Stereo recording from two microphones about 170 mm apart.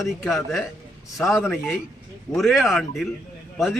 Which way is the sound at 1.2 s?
Centre (ahead or behind).